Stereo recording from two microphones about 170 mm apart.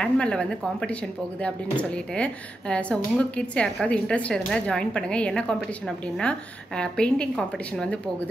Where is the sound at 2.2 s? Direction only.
5° left (ahead or behind).